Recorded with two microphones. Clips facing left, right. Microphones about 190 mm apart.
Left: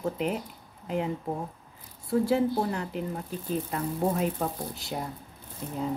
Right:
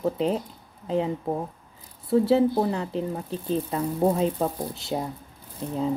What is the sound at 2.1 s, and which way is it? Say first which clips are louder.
Speech: right 5 dB; 25° right (ahead or behind).